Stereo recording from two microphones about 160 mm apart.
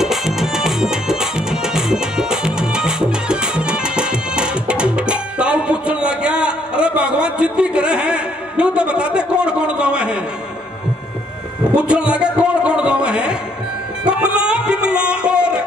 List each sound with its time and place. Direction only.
0.0 s music: centre (ahead or behind)
11.7 s music: 5° right (ahead or behind)